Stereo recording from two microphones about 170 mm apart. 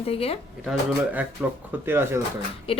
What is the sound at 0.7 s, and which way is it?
Speech, 10° right (ahead or behind).